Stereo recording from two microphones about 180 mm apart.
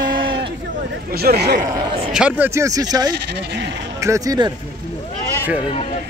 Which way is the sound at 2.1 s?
10° right (ahead or behind).